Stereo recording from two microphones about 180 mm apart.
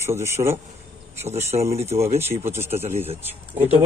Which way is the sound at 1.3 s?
40° right (ahead or behind).